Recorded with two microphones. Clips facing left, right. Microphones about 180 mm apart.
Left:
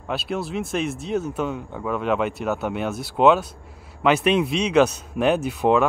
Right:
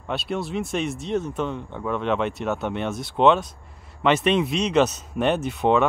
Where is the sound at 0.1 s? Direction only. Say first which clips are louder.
Even; centre (ahead or behind).